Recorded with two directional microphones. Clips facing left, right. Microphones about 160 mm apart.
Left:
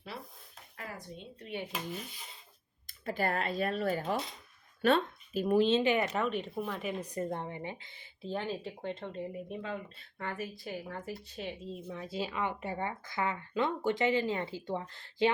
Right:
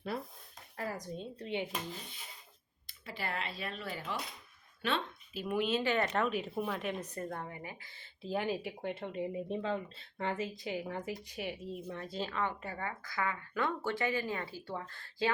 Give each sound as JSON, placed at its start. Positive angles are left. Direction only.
{"t": 0.1, "sound": "a sound", "side_deg": -50}
{"t": 0.8, "sound": "a woman's voice", "side_deg": -40}
{"t": 2.8, "sound": "speech", "side_deg": 45}
{"t": 6.1, "sound": "speech", "side_deg": 0}
{"t": 7.0, "sound": "speech", "side_deg": 15}
{"t": 8.2, "sound": "speech", "side_deg": -10}
{"t": 9.5, "sound": "speech", "side_deg": -30}
{"t": 11.9, "sound": "speech", "side_deg": 5}